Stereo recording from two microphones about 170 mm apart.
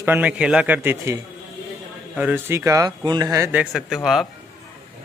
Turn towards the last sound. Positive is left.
turn(degrees=0)  # may be behind; listen again after turning